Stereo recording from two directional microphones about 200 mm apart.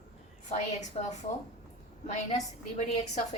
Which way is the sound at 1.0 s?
30° left (ahead or behind).